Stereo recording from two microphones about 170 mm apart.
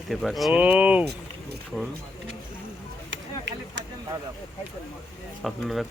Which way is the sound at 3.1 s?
90° right.